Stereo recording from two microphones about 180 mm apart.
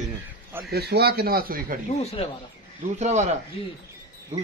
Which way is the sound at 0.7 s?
60° right (ahead or behind).